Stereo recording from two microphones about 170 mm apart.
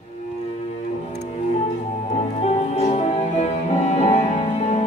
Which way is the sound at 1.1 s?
40° left (ahead or behind).